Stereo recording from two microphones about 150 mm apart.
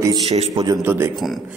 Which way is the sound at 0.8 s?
15° right (ahead or behind).